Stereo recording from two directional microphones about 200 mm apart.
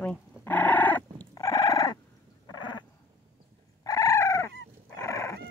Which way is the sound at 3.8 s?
20° left (ahead or behind).